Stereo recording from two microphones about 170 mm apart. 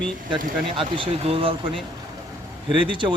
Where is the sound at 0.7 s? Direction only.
30° right (ahead or behind).